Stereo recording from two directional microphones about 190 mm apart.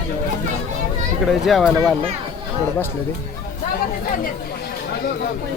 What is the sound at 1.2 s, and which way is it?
Speech, centre (ahead or behind).